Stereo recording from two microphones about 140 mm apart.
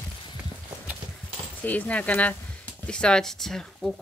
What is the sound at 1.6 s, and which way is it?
Speech, 10° left (ahead or behind).